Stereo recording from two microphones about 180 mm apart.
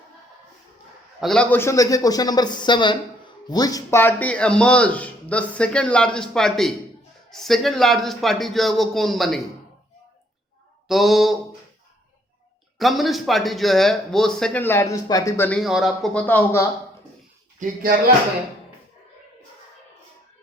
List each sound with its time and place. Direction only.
1.2 s speech: 5° left (ahead or behind)
10.8 s speech: centre (ahead or behind)
12.8 s speech: centre (ahead or behind); by 15.4 s 20° left (ahead or behind)
15.4 s speech: centre (ahead or behind)
17.6 s speech: 45° right (ahead or behind)